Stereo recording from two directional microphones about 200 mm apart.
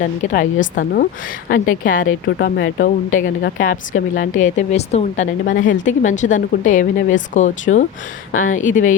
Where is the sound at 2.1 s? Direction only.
60° left (ahead or behind).